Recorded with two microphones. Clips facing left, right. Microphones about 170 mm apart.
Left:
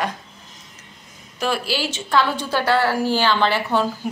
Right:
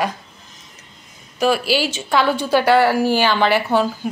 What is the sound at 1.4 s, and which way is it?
A woman's voice, 10° right (ahead or behind).